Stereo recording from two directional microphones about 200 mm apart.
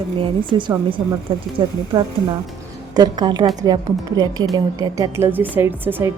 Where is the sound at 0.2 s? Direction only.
25° right (ahead or behind).